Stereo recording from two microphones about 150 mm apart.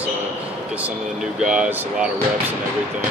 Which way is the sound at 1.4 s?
5° right (ahead or behind).